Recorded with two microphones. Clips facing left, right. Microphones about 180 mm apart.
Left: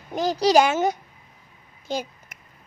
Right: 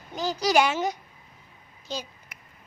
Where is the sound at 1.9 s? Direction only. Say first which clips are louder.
Left 6 dB; 55° left (ahead or behind).